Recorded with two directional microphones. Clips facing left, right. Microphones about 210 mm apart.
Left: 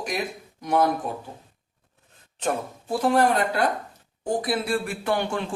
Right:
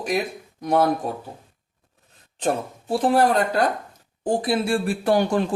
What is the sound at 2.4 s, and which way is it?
Speech, 30° right (ahead or behind).